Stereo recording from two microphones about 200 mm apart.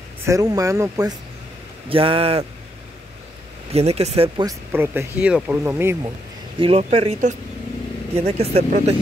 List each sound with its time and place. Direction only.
0.3 s speech: 15° right (ahead or behind)
1.9 s speech: 25° right (ahead or behind)
3.7 s speech: 30° right (ahead or behind)
4.5 s speech: 10° right (ahead or behind)
6.6 s speech: 30° right (ahead or behind)